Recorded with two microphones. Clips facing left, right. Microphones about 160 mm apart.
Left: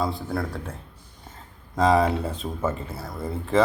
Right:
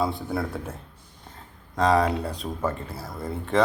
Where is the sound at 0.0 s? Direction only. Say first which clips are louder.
Even; centre (ahead or behind).